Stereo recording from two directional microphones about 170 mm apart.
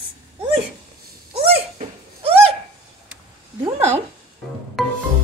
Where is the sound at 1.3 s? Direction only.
35° right (ahead or behind).